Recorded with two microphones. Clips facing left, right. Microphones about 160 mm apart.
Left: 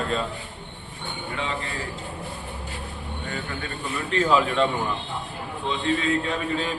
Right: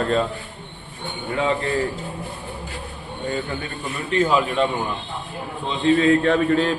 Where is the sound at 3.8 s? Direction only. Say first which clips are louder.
Right 3 dB; 10° right (ahead or behind).